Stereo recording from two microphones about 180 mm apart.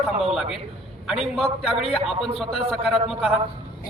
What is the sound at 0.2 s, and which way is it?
A man's voice, centre (ahead or behind).